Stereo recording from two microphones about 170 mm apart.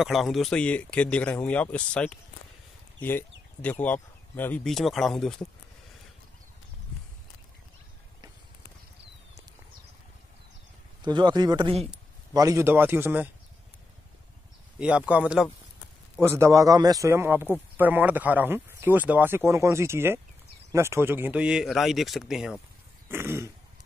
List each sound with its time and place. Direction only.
0.0 s speech: centre (ahead or behind)
11.1 s a man's voice: 25° right (ahead or behind)
12.4 s speech: 20° right (ahead or behind)
14.8 s speech: 5° right (ahead or behind)
23.0 s speech: 15° right (ahead or behind)